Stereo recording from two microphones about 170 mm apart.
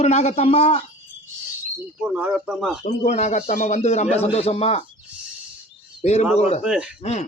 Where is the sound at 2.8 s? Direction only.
45° left (ahead or behind).